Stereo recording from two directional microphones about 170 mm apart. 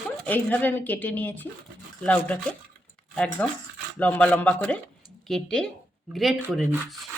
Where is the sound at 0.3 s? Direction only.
10° left (ahead or behind).